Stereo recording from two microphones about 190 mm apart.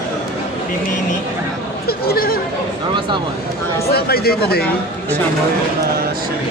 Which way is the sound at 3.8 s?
55° left (ahead or behind).